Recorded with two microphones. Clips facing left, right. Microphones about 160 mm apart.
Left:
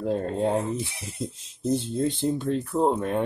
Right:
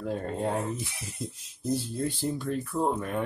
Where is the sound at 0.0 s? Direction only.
25° left (ahead or behind).